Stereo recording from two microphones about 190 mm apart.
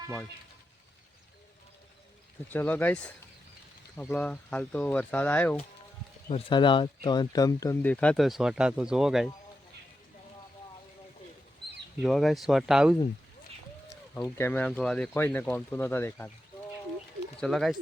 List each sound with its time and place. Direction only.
2.5 s speech: 10° left (ahead or behind)
6.2 s speech: 30° left (ahead or behind); by 9.3 s centre (ahead or behind)
12.0 s speech: centre (ahead or behind)
13.9 s a sound: 15° left (ahead or behind)
14.3 s speech: 10° left (ahead or behind)
17.4 s speech: centre (ahead or behind)